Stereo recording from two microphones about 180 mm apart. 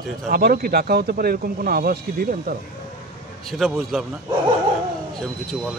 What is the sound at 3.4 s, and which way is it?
Speech, centre (ahead or behind).